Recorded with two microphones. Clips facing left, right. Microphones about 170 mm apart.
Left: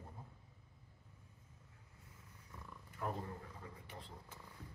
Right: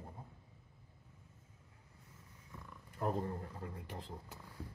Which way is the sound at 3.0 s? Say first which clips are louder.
Right 6 dB; 40° right (ahead or behind).